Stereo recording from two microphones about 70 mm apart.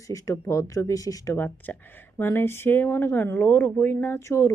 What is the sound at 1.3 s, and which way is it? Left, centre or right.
Speech, left.